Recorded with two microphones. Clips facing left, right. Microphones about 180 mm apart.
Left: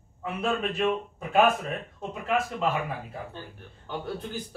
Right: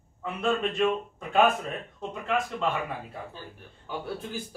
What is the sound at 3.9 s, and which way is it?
Speech, 5° right (ahead or behind).